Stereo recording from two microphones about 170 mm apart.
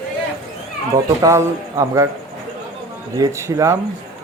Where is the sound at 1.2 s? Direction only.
20° right (ahead or behind).